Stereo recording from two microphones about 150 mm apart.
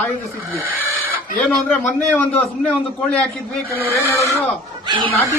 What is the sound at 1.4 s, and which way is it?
A man's voice, 10° left (ahead or behind).